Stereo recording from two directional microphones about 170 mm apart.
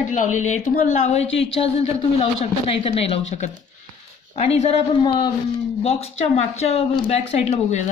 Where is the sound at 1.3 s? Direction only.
90° left.